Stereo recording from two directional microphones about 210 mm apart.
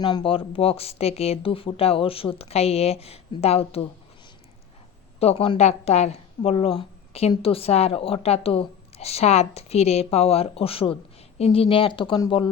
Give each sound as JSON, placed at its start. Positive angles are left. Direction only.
{"t": 0.0, "sound": "a woman's voice", "side_deg": 20}
{"t": 5.2, "sound": "a woman's voice", "side_deg": 25}